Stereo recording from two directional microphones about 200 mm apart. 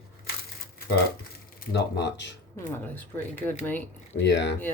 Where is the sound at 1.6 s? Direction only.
60° left (ahead or behind).